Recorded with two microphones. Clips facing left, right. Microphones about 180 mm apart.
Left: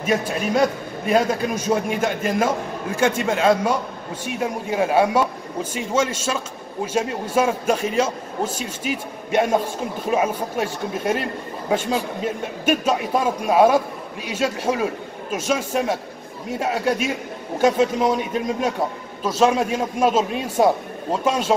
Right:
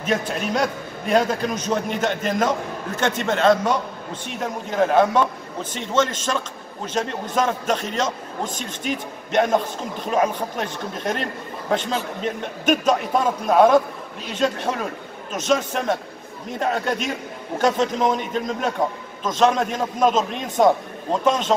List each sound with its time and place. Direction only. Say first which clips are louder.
0.0 s a man's voice: left 2 dB; 5° left (ahead or behind)